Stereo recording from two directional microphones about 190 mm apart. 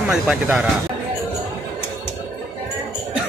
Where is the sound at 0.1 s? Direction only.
5° right (ahead or behind).